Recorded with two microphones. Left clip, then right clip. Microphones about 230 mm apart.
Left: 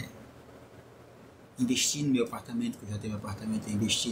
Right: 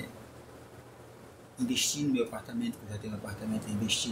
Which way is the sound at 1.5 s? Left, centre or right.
Centre.